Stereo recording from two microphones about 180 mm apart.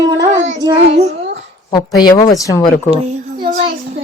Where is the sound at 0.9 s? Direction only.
35° right (ahead or behind).